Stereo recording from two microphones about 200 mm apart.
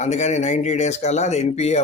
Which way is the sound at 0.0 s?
35° left (ahead or behind).